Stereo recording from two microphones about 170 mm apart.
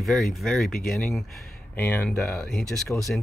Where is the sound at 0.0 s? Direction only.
Centre (ahead or behind).